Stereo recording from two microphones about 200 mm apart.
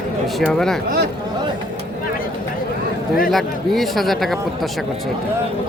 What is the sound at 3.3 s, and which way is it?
Speech, centre (ahead or behind).